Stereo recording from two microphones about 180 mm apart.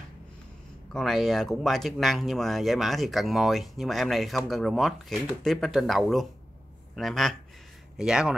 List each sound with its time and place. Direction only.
0.9 s speech: centre (ahead or behind)